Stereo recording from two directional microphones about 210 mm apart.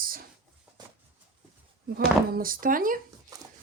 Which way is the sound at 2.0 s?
40° right (ahead or behind).